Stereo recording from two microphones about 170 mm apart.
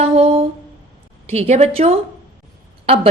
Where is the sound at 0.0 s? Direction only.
35° right (ahead or behind).